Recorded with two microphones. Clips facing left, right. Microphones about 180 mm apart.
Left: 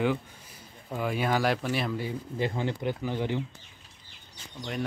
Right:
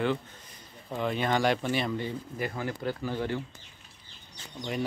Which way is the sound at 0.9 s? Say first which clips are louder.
Even; 5° left (ahead or behind).